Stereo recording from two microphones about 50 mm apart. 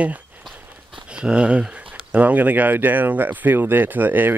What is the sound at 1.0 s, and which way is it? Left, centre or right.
Speech, right.